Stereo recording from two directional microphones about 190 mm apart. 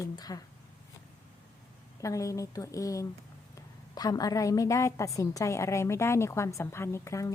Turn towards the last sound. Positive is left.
turn(degrees=15)  # may be behind; listen again after turning